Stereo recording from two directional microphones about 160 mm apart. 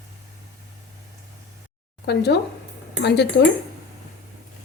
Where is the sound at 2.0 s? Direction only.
90° left.